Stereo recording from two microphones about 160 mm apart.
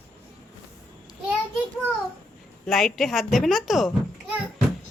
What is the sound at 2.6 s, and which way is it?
Speech, centre (ahead or behind).